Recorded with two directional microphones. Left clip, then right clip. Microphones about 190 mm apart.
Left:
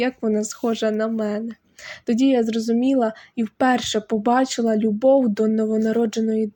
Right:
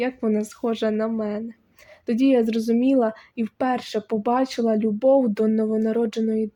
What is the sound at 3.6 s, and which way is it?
Speech, 15° left (ahead or behind).